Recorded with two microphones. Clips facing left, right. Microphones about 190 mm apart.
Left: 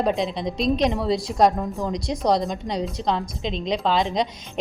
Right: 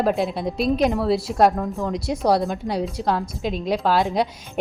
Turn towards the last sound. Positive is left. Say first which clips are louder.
# right 2 dB
turn(degrees=-5)  # may be behind; listen again after turning